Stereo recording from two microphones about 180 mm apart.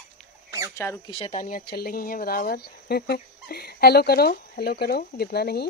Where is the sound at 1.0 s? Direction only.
35° left (ahead or behind); by 5.7 s 60° left (ahead or behind).